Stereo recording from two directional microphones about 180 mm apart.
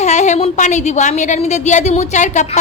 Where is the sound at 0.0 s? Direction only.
40° left (ahead or behind).